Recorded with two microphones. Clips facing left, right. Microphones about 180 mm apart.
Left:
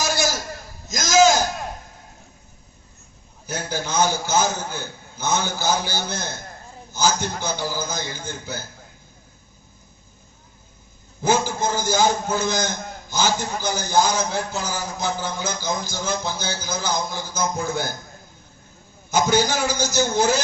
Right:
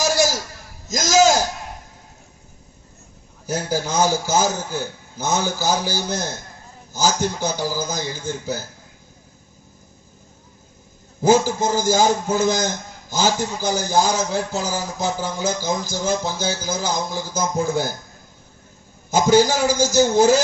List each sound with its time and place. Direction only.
0.9 s a sound: 40° right (ahead or behind)
3.4 s a man's voice: 40° right (ahead or behind)
11.2 s a man's voice: 40° right (ahead or behind)
19.1 s a man's voice: 40° right (ahead or behind)